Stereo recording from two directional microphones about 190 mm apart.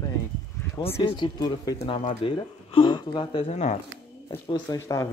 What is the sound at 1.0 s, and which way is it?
Speech, 25° left (ahead or behind).